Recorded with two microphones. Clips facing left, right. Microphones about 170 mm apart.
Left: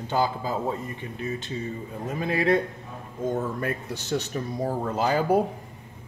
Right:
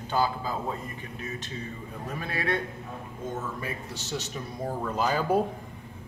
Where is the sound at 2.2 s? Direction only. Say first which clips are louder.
Left 9 dB; 20° left (ahead or behind).